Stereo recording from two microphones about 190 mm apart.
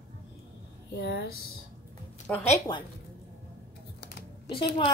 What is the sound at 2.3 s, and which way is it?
Speech, 5° left (ahead or behind).